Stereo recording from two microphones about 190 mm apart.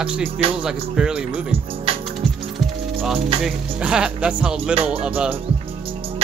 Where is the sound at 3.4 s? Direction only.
5° right (ahead or behind).